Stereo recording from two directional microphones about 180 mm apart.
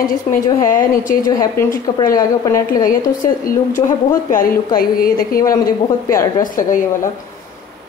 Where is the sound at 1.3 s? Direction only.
20° left (ahead or behind).